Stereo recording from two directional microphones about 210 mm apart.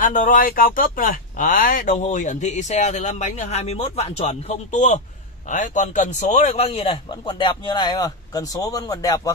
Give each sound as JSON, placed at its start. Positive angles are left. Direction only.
{"t": 0.0, "sound": "a man's voice", "side_deg": 40}